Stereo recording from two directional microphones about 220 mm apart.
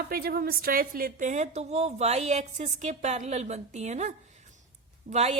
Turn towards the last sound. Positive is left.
turn(degrees=-30)  # may be behind; listen again after turning